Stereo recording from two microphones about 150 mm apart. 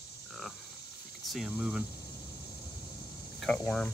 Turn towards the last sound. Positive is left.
turn(degrees=5)  # may be behind; listen again after turning